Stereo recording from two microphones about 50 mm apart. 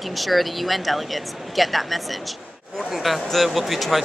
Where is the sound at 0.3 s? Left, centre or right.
Centre.